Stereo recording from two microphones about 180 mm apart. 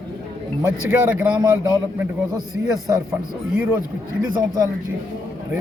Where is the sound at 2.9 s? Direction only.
15° right (ahead or behind).